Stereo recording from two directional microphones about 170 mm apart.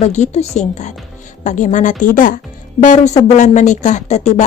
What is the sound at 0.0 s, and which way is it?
A woman's voice, 40° left (ahead or behind).